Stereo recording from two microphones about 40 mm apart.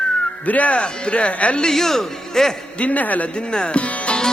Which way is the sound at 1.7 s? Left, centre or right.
Centre.